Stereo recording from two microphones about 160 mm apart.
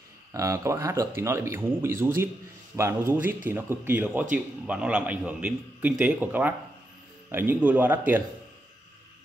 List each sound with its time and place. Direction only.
0.3 s speech: 20° right (ahead or behind)